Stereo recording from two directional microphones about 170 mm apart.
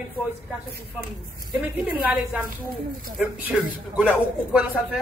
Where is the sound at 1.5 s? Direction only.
10° right (ahead or behind).